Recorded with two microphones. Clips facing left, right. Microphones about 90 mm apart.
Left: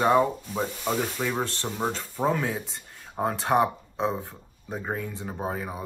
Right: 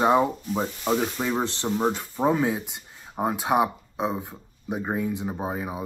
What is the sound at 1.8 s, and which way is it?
Speech, 15° right (ahead or behind).